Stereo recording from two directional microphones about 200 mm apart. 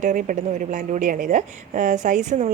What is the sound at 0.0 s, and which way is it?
A woman's voice, 40° right (ahead or behind).